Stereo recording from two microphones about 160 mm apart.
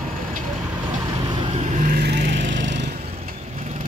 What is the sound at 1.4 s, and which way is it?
Vehicle, 50° right (ahead or behind).